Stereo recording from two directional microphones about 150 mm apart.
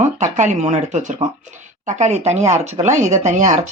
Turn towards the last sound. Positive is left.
turn(degrees=-55)  # may be behind; listen again after turning